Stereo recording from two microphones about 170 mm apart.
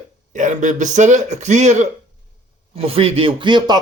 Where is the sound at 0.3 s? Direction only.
45° right (ahead or behind).